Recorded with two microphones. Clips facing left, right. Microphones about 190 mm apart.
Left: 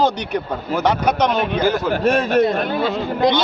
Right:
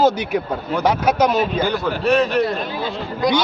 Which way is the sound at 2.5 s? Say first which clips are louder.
Left 5 dB; 60° left (ahead or behind).